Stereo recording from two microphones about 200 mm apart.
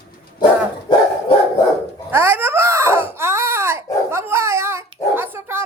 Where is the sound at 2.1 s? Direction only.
10° right (ahead or behind).